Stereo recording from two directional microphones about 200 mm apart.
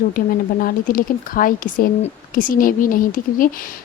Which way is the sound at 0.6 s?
45° left (ahead or behind).